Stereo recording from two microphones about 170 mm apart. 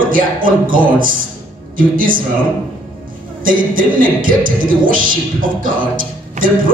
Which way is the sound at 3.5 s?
55° right (ahead or behind).